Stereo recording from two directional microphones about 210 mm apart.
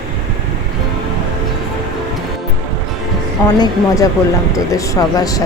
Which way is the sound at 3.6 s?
15° left (ahead or behind).